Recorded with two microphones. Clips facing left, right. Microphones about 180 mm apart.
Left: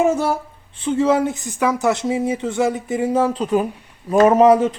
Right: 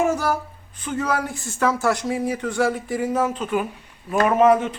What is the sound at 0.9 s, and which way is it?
A man's voice, 25° left (ahead or behind).